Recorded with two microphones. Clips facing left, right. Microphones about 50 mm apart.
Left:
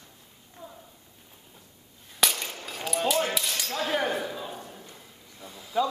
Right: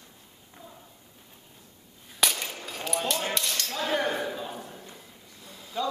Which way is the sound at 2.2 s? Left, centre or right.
Centre.